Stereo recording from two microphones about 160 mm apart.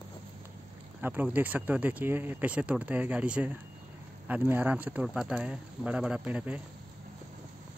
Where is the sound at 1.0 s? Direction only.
10° right (ahead or behind).